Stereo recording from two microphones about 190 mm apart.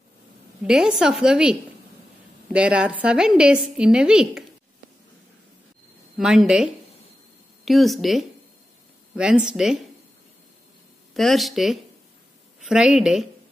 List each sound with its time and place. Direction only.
0.7 s a woman's voice: 5° right (ahead or behind)
6.1 s a woman's voice: centre (ahead or behind)
11.1 s a woman's voice: centre (ahead or behind)